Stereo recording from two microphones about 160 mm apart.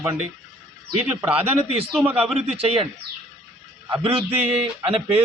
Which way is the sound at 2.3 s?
40° right (ahead or behind).